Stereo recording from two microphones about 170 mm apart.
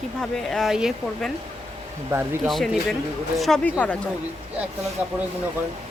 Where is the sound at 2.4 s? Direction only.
Centre (ahead or behind).